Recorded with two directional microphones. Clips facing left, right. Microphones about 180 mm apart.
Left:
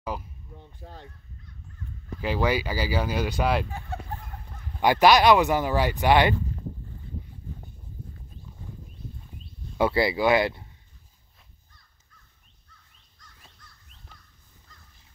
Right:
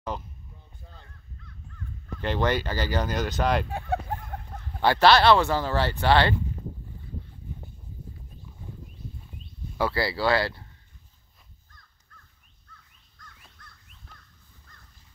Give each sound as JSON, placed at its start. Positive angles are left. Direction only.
{"t": 0.0, "sound": "speech", "side_deg": 10}
{"t": 0.6, "sound": "a sound", "side_deg": 85}
{"t": 2.1, "sound": "speech", "side_deg": 5}
{"t": 4.8, "sound": "speech", "side_deg": 15}
{"t": 9.8, "sound": "speech", "side_deg": 20}